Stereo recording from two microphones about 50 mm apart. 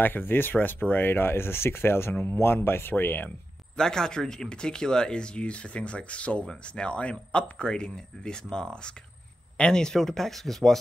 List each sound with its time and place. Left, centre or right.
0.0 s speech: left
3.7 s speech: centre